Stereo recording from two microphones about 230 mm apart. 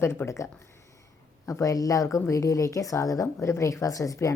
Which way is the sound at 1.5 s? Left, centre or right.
Centre.